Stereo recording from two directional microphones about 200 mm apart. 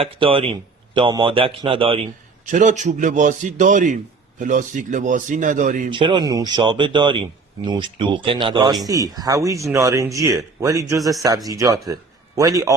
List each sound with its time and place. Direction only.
0.0 s speech: 25° right (ahead or behind)
2.5 s a man's voice: 40° right (ahead or behind)
5.9 s speech: 25° right (ahead or behind)